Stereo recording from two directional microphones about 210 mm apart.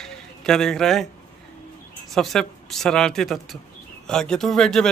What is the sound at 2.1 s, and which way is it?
Speech, centre (ahead or behind).